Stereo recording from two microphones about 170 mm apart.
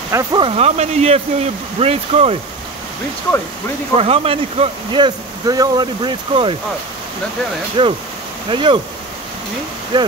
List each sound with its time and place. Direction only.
0.1 s speech: 20° right (ahead or behind)
3.9 s speech: 35° right (ahead or behind)
7.8 s speech: 30° right (ahead or behind)
9.9 s speech: 25° right (ahead or behind)